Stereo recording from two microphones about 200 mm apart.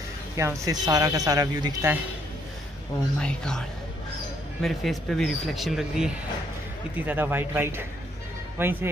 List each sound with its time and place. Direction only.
0.4 s speech: 15° right (ahead or behind)
3.2 s speech: 5° left (ahead or behind); by 8.7 s 10° right (ahead or behind)